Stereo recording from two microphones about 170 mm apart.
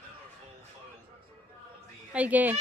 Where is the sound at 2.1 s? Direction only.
10° right (ahead or behind).